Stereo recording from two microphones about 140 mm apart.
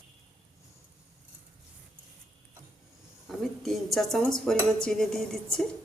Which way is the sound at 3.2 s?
Centre (ahead or behind).